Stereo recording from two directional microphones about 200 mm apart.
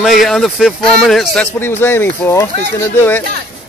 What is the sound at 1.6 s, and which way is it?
Speech, 10° left (ahead or behind).